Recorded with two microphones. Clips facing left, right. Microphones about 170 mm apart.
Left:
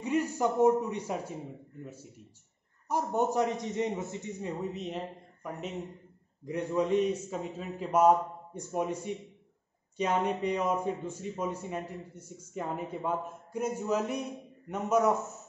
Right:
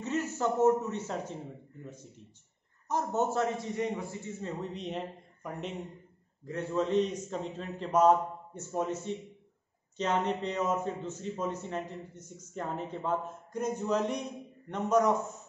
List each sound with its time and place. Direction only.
0.0 s a man's voice: 15° left (ahead or behind)
4.7 s speech: centre (ahead or behind)
6.4 s a man's voice: 15° left (ahead or behind)